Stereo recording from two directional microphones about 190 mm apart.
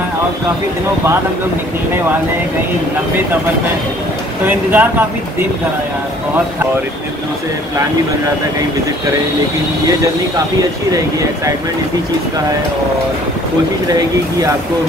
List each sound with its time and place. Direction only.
4.5 s speech: 10° right (ahead or behind)